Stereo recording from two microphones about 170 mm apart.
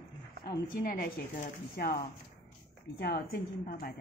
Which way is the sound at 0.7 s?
60° left (ahead or behind).